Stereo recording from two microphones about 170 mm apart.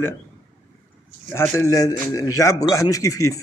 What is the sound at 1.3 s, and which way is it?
Speech, 15° left (ahead or behind).